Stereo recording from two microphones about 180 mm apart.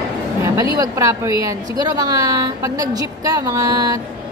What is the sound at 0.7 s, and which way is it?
A woman's voice, 15° right (ahead or behind).